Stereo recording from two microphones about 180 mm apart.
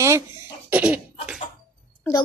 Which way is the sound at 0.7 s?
10° right (ahead or behind).